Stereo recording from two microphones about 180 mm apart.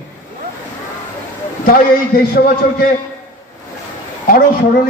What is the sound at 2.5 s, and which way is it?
Speech, 55° left (ahead or behind).